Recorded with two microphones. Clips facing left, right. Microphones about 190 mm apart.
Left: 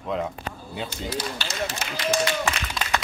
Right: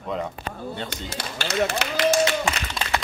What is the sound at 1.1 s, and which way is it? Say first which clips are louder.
Speech: even; 55° right (ahead or behind).